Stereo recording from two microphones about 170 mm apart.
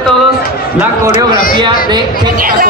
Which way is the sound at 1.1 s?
55° left (ahead or behind).